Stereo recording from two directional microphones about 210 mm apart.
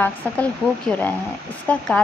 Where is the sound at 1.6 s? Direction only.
5° left (ahead or behind).